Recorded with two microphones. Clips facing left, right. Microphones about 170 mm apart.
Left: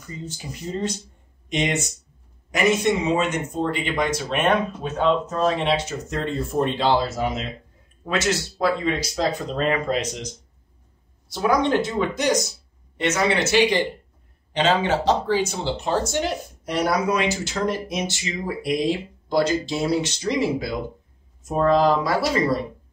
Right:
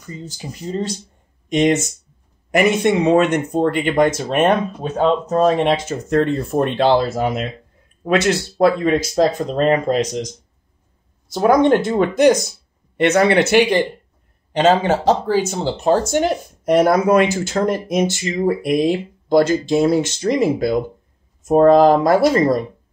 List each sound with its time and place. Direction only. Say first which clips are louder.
1.5 s speech: right 8 dB; 45° right (ahead or behind)
2.5 s speech: right 5 dB; 60° right (ahead or behind); by 10.0 s 40° right (ahead or behind)
11.2 s speech: right 7 dB; 45° right (ahead or behind)
14.5 s speech: right 6 dB; 45° right (ahead or behind)